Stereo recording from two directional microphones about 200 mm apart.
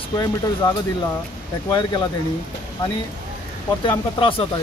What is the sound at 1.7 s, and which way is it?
Speech, 25° left (ahead or behind).